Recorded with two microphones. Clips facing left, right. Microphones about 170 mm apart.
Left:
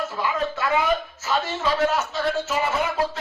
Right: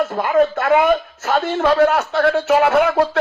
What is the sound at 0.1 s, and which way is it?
A woman's voice, 55° right (ahead or behind).